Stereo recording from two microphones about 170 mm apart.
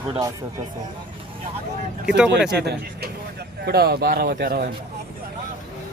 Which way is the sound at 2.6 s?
75° right (ahead or behind).